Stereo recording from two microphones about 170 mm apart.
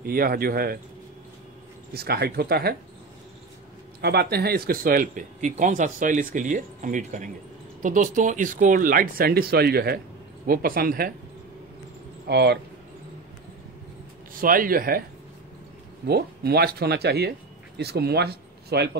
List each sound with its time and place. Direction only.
0.0 s speech: 60° right (ahead or behind)
2.0 s speech: 70° right (ahead or behind)
4.0 s speech: 70° right (ahead or behind)
12.3 s speech: 75° right (ahead or behind)
14.4 s speech: 55° right (ahead or behind)
16.1 s speech: 70° right (ahead or behind)